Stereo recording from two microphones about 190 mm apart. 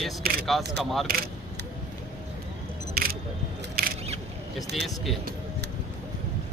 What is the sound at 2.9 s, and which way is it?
Single-lens reflex camera, 50° right (ahead or behind).